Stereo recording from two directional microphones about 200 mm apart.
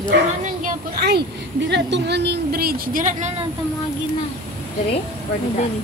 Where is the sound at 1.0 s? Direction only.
55° right (ahead or behind); by 3.3 s 40° right (ahead or behind).